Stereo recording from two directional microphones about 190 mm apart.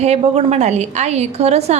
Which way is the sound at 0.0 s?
35° right (ahead or behind).